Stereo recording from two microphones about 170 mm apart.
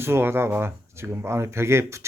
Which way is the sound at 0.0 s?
15° right (ahead or behind).